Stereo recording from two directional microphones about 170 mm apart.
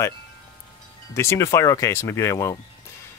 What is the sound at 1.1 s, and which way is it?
Speech, 15° left (ahead or behind).